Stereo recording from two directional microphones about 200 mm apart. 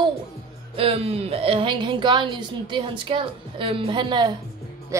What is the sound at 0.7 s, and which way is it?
A woman's voice, 30° right (ahead or behind).